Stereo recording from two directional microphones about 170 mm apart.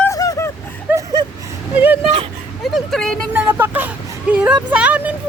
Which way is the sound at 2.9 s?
5° left (ahead or behind).